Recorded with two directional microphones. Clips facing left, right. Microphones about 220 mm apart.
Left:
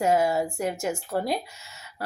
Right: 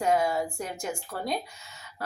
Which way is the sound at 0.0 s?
25° left (ahead or behind).